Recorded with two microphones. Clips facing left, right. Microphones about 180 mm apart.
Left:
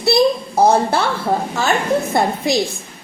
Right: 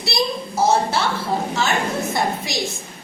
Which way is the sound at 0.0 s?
55° left (ahead or behind).